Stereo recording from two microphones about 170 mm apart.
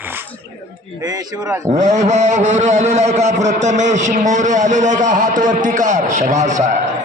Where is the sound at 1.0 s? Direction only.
20° right (ahead or behind).